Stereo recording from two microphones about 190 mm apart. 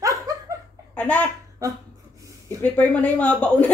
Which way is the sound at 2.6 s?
10° left (ahead or behind).